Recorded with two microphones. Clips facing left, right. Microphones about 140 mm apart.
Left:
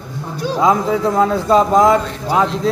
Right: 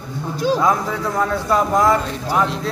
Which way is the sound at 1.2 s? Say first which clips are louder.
Left 4 dB; 20° left (ahead or behind).